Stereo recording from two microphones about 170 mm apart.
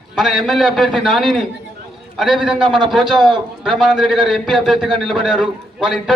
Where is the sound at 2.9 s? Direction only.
Centre (ahead or behind).